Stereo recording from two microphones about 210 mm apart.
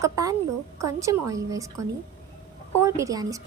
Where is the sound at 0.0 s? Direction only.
15° right (ahead or behind).